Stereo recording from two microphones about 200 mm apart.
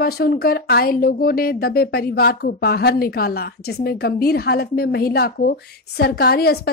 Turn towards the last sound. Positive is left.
turn(degrees=50)  # may be behind; listen again after turning